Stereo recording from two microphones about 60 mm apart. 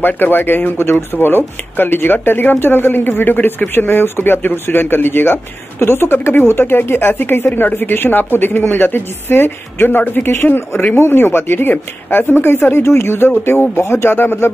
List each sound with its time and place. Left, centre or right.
0.0 s speech: left